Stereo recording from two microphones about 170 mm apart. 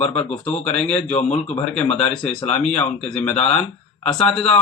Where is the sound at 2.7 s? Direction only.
5° left (ahead or behind).